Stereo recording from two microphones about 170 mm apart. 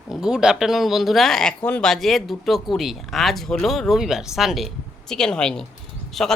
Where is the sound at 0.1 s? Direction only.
5° right (ahead or behind).